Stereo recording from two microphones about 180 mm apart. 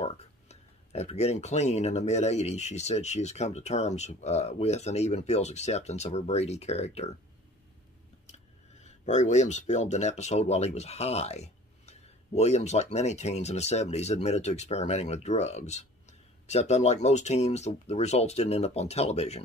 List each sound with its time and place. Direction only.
0.0 s speech: 35° left (ahead or behind)
8.3 s speech: 40° left (ahead or behind)